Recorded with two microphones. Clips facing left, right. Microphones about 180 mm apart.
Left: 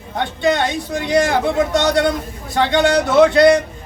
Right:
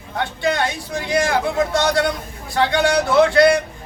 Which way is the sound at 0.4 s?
20° left (ahead or behind).